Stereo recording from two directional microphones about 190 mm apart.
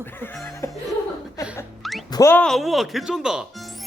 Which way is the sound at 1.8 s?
Centre (ahead or behind).